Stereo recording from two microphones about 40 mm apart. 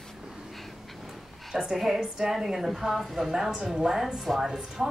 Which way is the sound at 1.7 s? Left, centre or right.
Centre.